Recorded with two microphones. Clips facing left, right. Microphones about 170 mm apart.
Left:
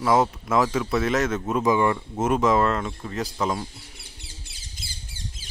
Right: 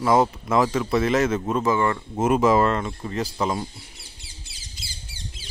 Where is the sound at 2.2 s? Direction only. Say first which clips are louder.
Right 2 dB; 5° right (ahead or behind).